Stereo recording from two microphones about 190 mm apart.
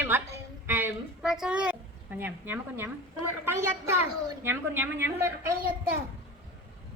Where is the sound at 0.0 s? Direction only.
15° right (ahead or behind).